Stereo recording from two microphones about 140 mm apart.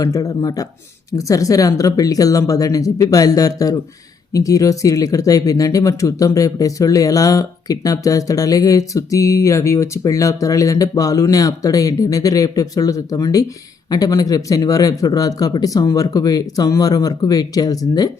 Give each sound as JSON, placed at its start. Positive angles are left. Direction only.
{"t": 0.0, "sound": "speech", "side_deg": 25}